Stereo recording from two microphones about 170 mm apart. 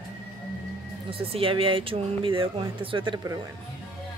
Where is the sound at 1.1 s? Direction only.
35° right (ahead or behind).